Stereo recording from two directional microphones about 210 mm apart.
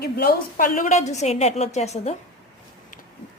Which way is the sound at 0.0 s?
45° left (ahead or behind).